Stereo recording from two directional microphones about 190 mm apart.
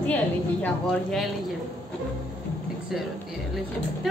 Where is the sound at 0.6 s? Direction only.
Centre (ahead or behind).